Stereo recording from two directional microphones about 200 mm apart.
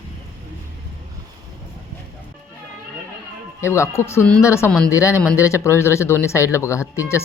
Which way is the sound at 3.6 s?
15° left (ahead or behind).